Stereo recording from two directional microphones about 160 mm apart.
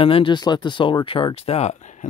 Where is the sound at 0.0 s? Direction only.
35° left (ahead or behind).